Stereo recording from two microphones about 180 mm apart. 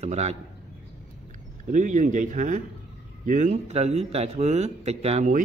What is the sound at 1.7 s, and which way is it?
Speech, 45° right (ahead or behind).